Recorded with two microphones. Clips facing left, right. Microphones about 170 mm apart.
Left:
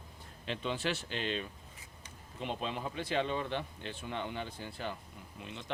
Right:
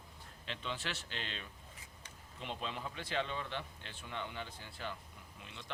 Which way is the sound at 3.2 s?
40° left (ahead or behind).